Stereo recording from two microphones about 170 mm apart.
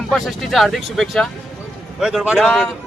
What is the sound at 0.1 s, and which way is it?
Speech, centre (ahead or behind).